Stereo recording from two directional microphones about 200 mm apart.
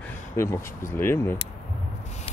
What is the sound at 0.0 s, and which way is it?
Speech, 15° left (ahead or behind).